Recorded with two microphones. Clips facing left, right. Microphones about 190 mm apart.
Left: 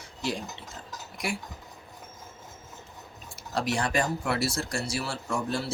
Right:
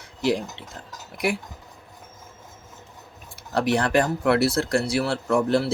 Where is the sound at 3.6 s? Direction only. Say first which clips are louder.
Right 7 dB; 60° right (ahead or behind).